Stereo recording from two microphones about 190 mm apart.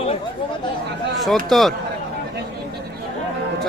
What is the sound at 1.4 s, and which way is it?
Speech, centre (ahead or behind).